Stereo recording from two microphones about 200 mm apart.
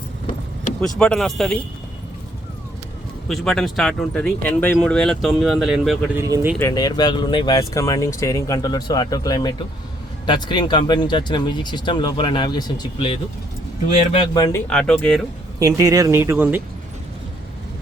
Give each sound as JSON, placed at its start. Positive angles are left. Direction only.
{"t": 0.9, "sound": "speech", "side_deg": 5}
{"t": 3.2, "sound": "speech", "side_deg": 0}
{"t": 6.1, "sound": "speech", "side_deg": -15}
{"t": 6.6, "sound": "speech", "side_deg": 20}
{"t": 14.3, "sound": "speech", "side_deg": 15}
{"t": 14.7, "sound": "speech", "side_deg": 5}
{"t": 15.5, "sound": "speech", "side_deg": -15}